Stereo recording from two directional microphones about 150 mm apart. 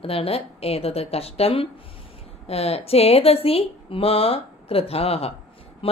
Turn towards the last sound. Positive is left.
turn(degrees=40)  # may be behind; listen again after turning